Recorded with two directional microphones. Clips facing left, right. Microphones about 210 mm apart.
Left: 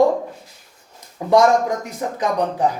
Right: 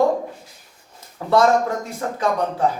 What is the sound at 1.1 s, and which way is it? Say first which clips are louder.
Speech: left 2 dB; 15° left (ahead or behind).